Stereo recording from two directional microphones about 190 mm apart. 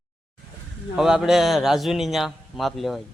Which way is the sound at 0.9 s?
Centre (ahead or behind).